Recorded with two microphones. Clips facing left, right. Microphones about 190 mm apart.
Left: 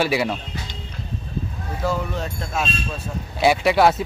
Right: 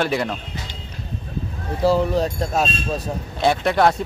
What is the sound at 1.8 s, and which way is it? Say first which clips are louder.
Speech: right 7 dB; 35° right (ahead or behind).